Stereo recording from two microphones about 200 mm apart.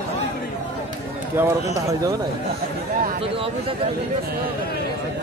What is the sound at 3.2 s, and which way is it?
Speech, 25° right (ahead or behind).